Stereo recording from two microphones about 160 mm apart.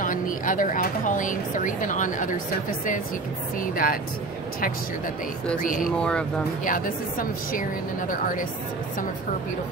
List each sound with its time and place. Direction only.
0.0 s speech: 55° left (ahead or behind)
5.6 s speech: 55° left (ahead or behind)
5.9 s speech: 5° left (ahead or behind)
6.6 s speech: 60° left (ahead or behind)